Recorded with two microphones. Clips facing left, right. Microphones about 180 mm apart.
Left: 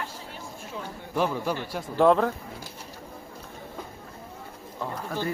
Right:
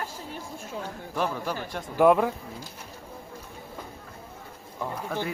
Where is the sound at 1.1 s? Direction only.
10° left (ahead or behind).